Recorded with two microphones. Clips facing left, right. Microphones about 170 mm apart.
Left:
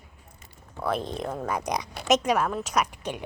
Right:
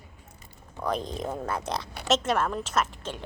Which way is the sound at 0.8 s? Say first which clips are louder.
Left 1 dB; 5° left (ahead or behind).